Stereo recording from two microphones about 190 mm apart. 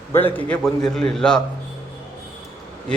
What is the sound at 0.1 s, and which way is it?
A man's voice, 10° left (ahead or behind).